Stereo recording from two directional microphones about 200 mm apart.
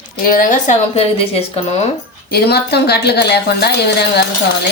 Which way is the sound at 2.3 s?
55° left (ahead or behind).